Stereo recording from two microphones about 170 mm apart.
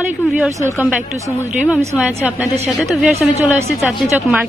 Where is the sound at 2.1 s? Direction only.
10° right (ahead or behind).